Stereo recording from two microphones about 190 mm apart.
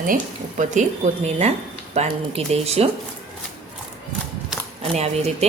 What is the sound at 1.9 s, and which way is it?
Speech, 35° right (ahead or behind).